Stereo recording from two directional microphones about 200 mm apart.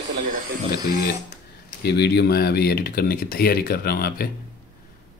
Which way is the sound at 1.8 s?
55° left (ahead or behind).